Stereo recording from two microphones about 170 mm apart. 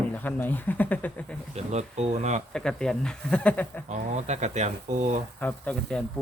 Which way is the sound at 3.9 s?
45° right (ahead or behind).